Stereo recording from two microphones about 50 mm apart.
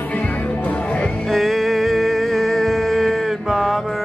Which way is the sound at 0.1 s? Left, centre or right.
Left.